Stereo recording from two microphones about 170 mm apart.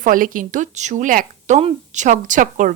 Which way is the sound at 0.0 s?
55° right (ahead or behind).